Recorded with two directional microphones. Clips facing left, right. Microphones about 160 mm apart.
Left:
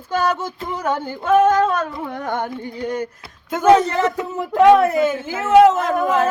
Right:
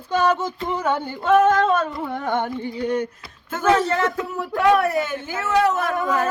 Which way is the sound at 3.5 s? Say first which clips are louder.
Left 5 dB; 15° left (ahead or behind).